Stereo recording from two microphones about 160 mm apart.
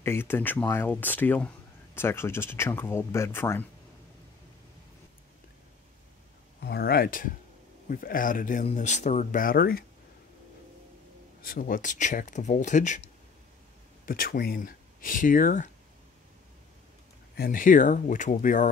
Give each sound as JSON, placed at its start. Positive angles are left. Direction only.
{"t": 0.0, "sound": "speech", "side_deg": 15}
{"t": 6.6, "sound": "speech", "side_deg": 90}
{"t": 11.4, "sound": "speech", "side_deg": 60}
{"t": 14.0, "sound": "speech", "side_deg": 65}
{"t": 17.4, "sound": "speech", "side_deg": 60}